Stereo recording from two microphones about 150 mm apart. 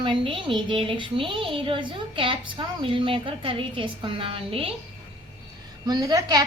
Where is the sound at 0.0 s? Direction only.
35° right (ahead or behind).